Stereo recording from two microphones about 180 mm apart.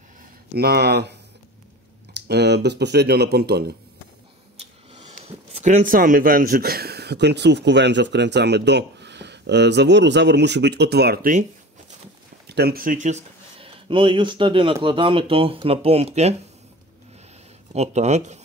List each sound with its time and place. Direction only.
0.6 s speech: 60° right (ahead or behind)
2.1 s speech: 65° right (ahead or behind)
4.6 s speech: 35° right (ahead or behind); by 11.3 s 65° right (ahead or behind)
12.4 s speech: 65° right (ahead or behind); by 16.3 s 35° right (ahead or behind)
17.7 s speech: 40° right (ahead or behind)